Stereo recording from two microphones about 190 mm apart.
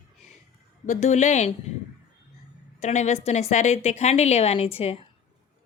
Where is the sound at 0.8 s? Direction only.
40° left (ahead or behind).